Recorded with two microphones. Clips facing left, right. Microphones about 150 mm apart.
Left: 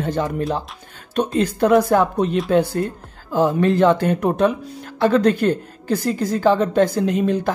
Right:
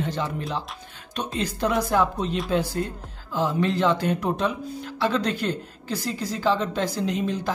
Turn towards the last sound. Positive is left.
turn(degrees=55)  # may be behind; listen again after turning